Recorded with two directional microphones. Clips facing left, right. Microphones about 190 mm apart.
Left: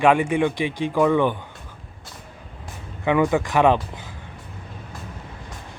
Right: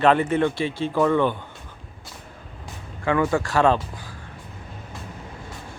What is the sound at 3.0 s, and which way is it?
A man's voice, 15° left (ahead or behind).